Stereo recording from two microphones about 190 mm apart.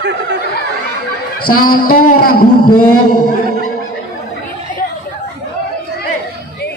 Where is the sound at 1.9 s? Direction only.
50° left (ahead or behind).